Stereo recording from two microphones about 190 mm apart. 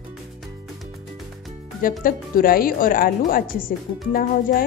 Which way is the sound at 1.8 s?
50° left (ahead or behind).